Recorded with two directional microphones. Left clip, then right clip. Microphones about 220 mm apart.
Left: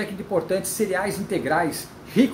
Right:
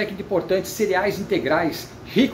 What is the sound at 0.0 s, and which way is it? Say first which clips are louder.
Speech: right 2 dB; 10° left (ahead or behind).